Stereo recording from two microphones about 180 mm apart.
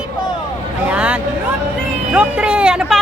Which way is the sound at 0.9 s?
5° right (ahead or behind).